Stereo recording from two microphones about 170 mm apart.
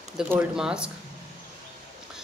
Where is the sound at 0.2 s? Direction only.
10° right (ahead or behind).